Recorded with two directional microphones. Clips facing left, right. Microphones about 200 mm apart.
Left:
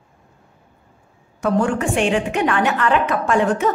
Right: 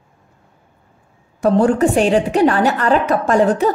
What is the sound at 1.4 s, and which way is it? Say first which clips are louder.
Speech: right 6 dB; 35° right (ahead or behind).